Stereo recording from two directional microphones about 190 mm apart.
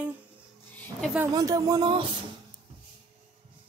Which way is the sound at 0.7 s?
10° left (ahead or behind).